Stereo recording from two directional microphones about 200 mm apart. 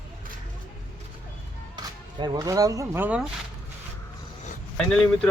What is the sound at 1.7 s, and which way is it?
Speech, 20° right (ahead or behind).